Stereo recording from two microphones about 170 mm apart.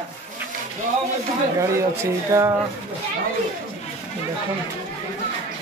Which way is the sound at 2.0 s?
15° right (ahead or behind).